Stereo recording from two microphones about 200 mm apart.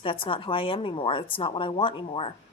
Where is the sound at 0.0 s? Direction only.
25° left (ahead or behind).